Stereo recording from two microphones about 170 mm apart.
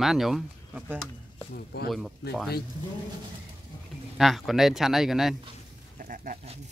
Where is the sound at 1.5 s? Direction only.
65° left (ahead or behind).